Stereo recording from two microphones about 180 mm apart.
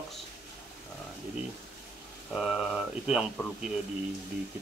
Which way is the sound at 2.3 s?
Centre (ahead or behind).